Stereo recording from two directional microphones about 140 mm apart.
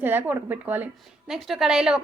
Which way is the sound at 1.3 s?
Centre (ahead or behind).